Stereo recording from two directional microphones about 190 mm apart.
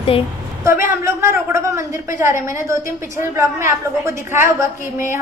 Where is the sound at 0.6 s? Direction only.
15° right (ahead or behind).